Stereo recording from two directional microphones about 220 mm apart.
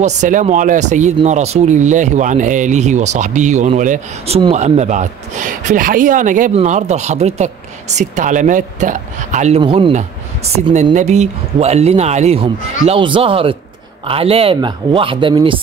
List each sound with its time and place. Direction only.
0.0 s a woman's voice: 35° right (ahead or behind)